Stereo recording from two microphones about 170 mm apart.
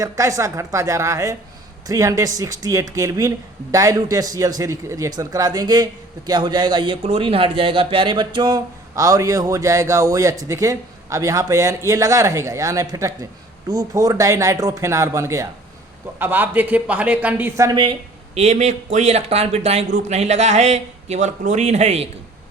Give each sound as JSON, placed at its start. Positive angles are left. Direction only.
{"t": 0.0, "sound": "a man's voice", "side_deg": -20}
{"t": 18.3, "sound": "speech", "side_deg": -40}